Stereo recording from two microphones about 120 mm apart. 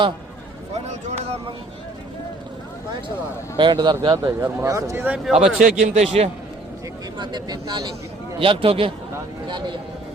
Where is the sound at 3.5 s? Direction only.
40° right (ahead or behind).